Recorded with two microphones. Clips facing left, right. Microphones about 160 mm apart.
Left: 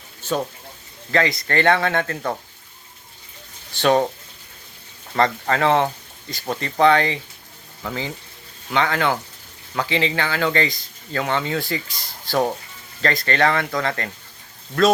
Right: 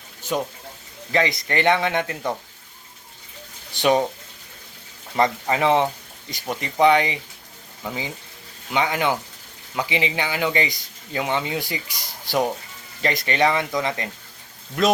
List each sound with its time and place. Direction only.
0.2 s speech: 15° right (ahead or behind)
3.8 s speech: 10° right (ahead or behind)
5.1 s speech: 15° right (ahead or behind)